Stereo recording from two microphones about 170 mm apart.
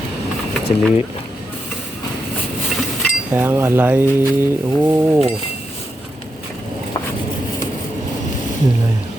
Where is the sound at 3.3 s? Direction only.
15° right (ahead or behind).